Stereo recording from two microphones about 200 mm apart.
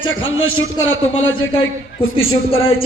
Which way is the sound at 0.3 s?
85° left.